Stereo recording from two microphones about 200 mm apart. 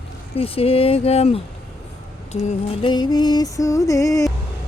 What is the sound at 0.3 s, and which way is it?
Music, 30° left (ahead or behind).